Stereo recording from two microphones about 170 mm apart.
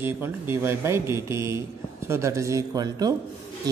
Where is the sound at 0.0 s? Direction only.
15° right (ahead or behind).